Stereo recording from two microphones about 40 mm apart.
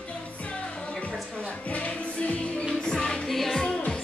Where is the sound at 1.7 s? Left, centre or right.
Left.